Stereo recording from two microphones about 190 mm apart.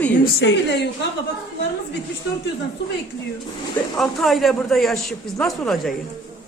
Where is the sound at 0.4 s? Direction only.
70° left (ahead or behind).